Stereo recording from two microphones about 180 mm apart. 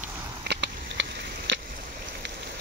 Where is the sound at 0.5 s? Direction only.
75° right (ahead or behind).